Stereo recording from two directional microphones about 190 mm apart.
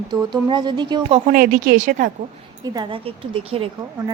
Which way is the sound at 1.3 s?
45° right (ahead or behind).